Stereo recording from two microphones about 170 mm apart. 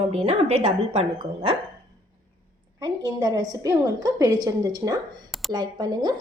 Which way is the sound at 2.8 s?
20° right (ahead or behind).